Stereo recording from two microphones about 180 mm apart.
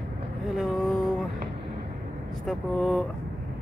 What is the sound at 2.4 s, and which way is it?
Speech, centre (ahead or behind).